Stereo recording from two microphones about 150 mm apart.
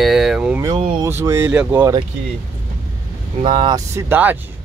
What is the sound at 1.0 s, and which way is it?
Speech, 20° right (ahead or behind).